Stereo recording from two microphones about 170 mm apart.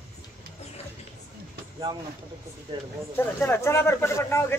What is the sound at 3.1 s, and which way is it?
Speech, 10° left (ahead or behind).